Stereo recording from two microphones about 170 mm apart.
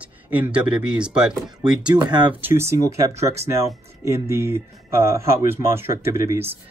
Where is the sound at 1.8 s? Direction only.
25° right (ahead or behind).